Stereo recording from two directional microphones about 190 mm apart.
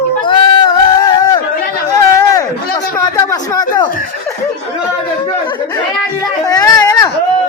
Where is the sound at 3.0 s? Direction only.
20° left (ahead or behind).